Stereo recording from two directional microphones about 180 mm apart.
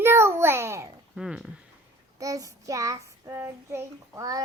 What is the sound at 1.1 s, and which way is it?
Speech, 5° right (ahead or behind).